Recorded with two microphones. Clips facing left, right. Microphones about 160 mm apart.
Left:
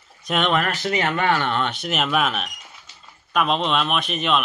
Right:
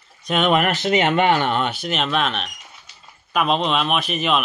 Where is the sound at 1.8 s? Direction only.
5° left (ahead or behind).